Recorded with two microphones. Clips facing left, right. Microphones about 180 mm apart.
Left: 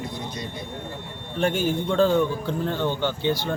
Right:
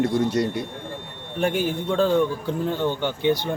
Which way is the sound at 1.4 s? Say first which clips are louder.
Even; 10° right (ahead or behind).